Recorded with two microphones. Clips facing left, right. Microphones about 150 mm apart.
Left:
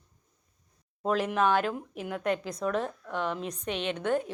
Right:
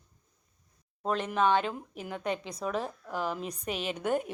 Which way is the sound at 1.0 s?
Centre (ahead or behind).